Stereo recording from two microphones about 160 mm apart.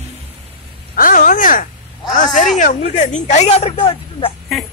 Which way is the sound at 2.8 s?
45° left (ahead or behind).